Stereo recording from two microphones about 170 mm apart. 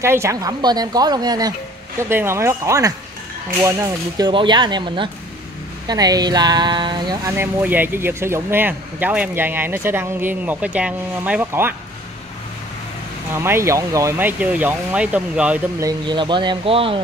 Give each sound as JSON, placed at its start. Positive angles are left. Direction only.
{"t": 0.0, "sound": "speech", "side_deg": -15}
{"t": 4.3, "sound": "speech", "side_deg": -30}
{"t": 13.3, "sound": "speech", "side_deg": -15}
{"t": 15.8, "sound": "speech", "side_deg": -25}